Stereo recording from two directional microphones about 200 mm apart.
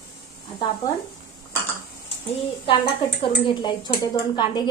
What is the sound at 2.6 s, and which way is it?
A woman's voice, 25° left (ahead or behind).